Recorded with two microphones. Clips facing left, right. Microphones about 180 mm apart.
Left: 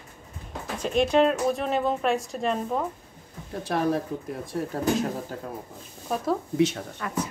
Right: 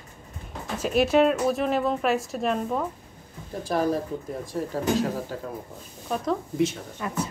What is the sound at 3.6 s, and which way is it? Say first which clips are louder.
Speech: right 1 dB; 65° left (ahead or behind).